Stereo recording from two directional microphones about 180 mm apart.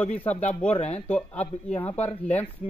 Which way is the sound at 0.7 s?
35° left (ahead or behind).